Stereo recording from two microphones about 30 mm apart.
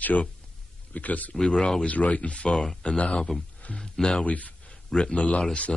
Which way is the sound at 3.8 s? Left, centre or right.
Left.